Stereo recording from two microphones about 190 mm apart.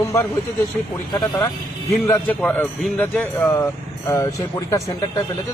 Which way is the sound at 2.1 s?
10° left (ahead or behind).